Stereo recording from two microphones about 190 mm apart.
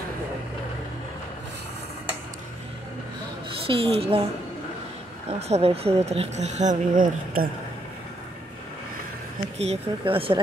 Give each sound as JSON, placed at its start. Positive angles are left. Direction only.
{"t": 3.6, "sound": "speech", "side_deg": -30}
{"t": 5.5, "sound": "speech", "side_deg": -30}
{"t": 9.6, "sound": "speech", "side_deg": -30}